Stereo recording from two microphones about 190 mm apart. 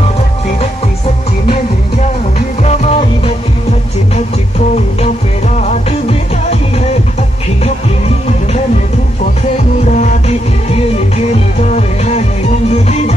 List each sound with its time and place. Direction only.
2.6 s music: 35° left (ahead or behind)
4.6 s music: 40° left (ahead or behind)
9.8 s music: 40° left (ahead or behind)
12.6 s music: 35° left (ahead or behind)